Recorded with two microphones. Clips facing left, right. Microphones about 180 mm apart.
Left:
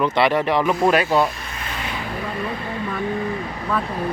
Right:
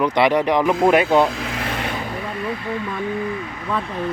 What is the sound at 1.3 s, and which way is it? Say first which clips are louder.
Vehicle: right 7 dB; 90° right.